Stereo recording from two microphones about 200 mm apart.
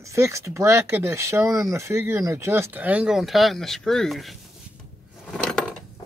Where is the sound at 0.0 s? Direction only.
15° right (ahead or behind).